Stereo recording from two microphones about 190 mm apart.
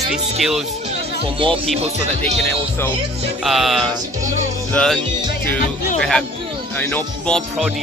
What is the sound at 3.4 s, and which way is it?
Speech, centre (ahead or behind).